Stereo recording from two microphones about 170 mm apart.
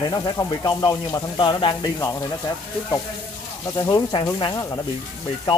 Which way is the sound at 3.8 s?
25° left (ahead or behind).